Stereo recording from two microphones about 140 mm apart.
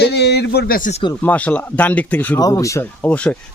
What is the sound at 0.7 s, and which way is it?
Speech, 70° left (ahead or behind).